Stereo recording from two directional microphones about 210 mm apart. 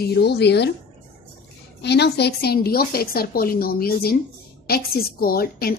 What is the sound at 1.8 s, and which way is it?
A woman's voice, 55° left (ahead or behind).